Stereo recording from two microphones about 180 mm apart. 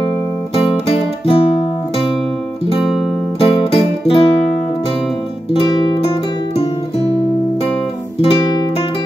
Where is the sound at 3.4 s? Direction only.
30° left (ahead or behind).